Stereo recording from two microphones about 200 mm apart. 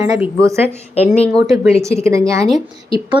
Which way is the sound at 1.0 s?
30° left (ahead or behind).